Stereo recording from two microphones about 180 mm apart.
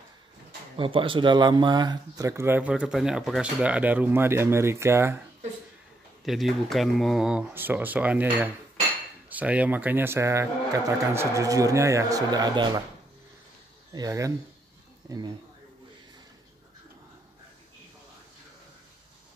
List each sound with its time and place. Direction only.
0.7 s speech: 30° right (ahead or behind)
6.2 s speech: centre (ahead or behind); by 12.8 s 25° right (ahead or behind)
13.9 s speech: 20° right (ahead or behind)